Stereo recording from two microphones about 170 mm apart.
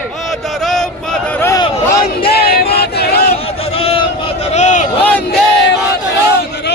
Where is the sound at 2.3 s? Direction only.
65° left (ahead or behind).